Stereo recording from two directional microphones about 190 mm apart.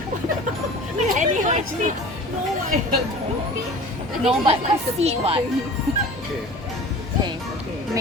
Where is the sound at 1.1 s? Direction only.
40° right (ahead or behind).